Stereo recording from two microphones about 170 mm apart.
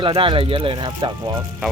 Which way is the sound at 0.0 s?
30° right (ahead or behind).